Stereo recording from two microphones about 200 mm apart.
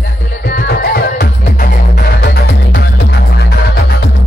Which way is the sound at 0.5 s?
50° left (ahead or behind).